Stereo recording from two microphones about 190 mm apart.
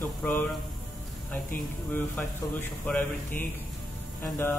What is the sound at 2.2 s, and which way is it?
Mantra, 10° left (ahead or behind).